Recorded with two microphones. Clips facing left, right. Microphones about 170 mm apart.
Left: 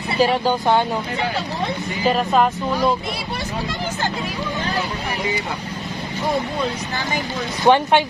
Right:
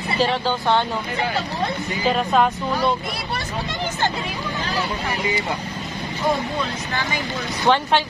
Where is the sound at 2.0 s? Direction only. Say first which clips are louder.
Left 1 dB; centre (ahead or behind).